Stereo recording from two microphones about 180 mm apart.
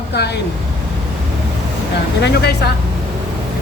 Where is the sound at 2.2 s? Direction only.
65° left (ahead or behind).